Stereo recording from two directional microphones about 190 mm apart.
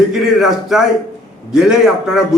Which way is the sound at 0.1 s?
Centre (ahead or behind).